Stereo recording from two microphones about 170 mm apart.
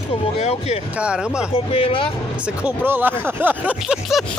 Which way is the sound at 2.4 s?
10° right (ahead or behind).